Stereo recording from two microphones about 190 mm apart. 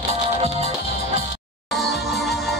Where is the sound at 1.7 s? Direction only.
Centre (ahead or behind).